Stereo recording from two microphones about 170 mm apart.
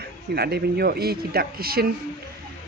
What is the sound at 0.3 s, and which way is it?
Speech, 70° right (ahead or behind).